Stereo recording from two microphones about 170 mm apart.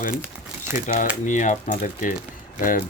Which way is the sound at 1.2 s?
45° left (ahead or behind).